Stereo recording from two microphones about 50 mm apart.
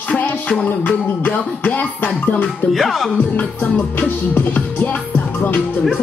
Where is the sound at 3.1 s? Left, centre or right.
Left.